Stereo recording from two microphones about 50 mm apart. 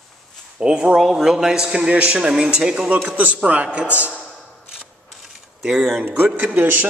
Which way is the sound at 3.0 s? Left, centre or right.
Right.